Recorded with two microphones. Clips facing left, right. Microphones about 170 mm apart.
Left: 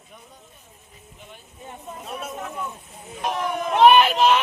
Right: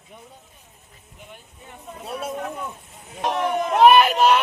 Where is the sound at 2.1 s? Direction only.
30° right (ahead or behind).